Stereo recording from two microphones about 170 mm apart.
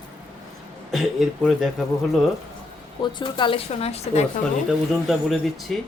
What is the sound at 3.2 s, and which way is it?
A woman's voice, 30° left (ahead or behind).